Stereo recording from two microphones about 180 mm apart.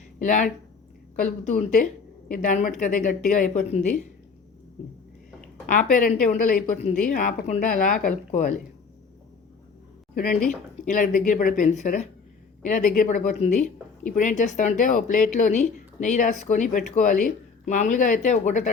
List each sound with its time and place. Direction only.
0.2 s speech: 45° left (ahead or behind)
5.6 s speech: 45° left (ahead or behind)
10.8 s speech: 45° left (ahead or behind)